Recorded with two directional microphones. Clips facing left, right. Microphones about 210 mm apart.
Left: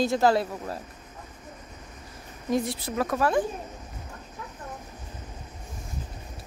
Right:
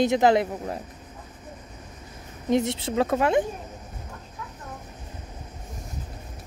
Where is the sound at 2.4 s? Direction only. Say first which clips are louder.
Right 4 dB; 25° right (ahead or behind).